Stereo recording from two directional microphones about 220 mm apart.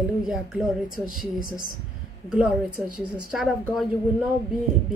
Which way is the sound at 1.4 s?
20° right (ahead or behind).